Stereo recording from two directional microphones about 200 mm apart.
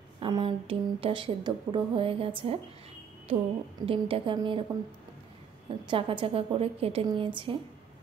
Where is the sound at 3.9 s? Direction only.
25° right (ahead or behind).